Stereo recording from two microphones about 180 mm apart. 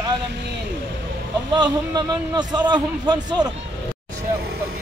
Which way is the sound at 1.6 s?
25° right (ahead or behind).